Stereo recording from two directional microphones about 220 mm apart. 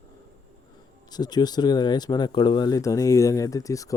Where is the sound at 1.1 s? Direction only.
20° left (ahead or behind).